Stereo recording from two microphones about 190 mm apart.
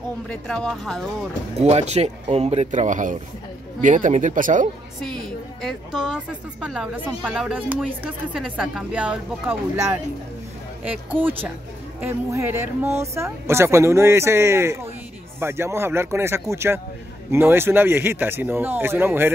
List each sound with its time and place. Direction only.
0.3 s a woman's voice: 5° left (ahead or behind)
1.6 s speech: 35° right (ahead or behind)
5.0 s a woman's voice: centre (ahead or behind)
11.1 s speech: 10° right (ahead or behind)